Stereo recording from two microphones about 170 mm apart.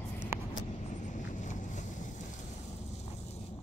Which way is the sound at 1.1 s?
45° left (ahead or behind).